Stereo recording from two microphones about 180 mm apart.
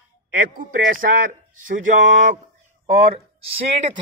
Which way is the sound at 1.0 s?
55° right (ahead or behind).